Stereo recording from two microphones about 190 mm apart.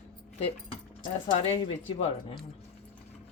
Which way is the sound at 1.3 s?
25° left (ahead or behind).